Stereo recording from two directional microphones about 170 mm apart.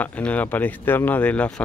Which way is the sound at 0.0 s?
10° left (ahead or behind).